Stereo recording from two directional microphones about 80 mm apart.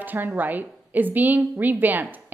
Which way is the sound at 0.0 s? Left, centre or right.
Right.